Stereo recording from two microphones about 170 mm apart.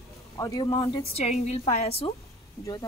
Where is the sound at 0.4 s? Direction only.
20° left (ahead or behind).